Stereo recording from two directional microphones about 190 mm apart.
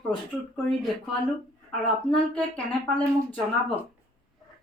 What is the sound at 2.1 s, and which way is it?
Speech, 5° left (ahead or behind).